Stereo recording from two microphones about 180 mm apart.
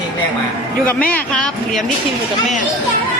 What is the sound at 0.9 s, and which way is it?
Speech, 10° left (ahead or behind).